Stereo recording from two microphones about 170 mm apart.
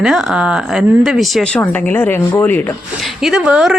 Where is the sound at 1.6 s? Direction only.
10° left (ahead or behind).